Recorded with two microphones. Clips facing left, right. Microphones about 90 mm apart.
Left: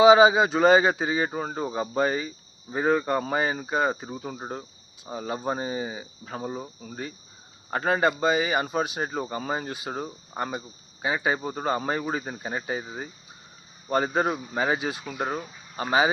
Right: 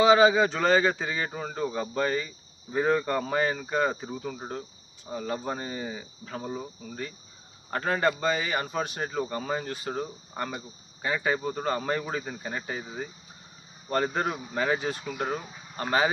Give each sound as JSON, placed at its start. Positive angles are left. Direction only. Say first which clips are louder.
{"t": 0.0, "sound": "speech", "louder": "left 3 dB", "side_deg": 15}
{"t": 1.3, "sound": "speech", "louder": "left 2 dB", "side_deg": 30}
{"t": 7.7, "sound": "speech", "louder": "left 3 dB", "side_deg": 10}
{"t": 12.2, "sound": "speech", "louder": "left 3 dB", "side_deg": 30}
{"t": 13.9, "sound": "speech", "louder": "left 3 dB", "side_deg": 10}